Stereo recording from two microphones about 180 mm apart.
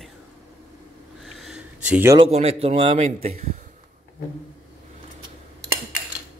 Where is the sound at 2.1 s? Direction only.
35° right (ahead or behind).